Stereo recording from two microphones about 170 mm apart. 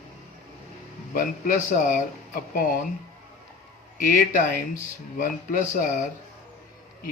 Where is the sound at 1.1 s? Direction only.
50° left (ahead or behind).